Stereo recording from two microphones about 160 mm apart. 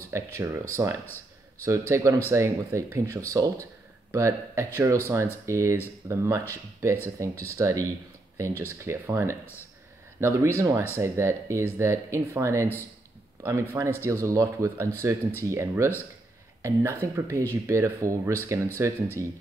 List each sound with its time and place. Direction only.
0.1 s speech: 20° right (ahead or behind)